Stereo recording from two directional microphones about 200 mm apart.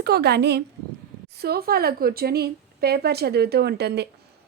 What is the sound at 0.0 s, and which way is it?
A woman's voice, 55° right (ahead or behind).